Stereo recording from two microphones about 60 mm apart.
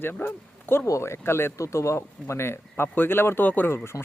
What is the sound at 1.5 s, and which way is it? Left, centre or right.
Speech, left.